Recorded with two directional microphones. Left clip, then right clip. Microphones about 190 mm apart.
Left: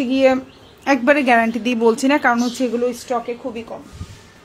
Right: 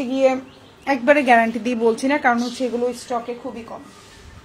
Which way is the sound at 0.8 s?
20° left (ahead or behind).